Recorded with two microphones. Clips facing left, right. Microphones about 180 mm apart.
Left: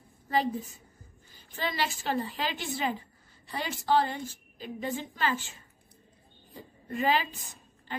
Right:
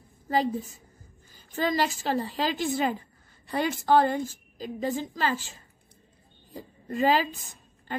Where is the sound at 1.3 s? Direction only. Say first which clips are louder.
Right 7 dB; 45° right (ahead or behind).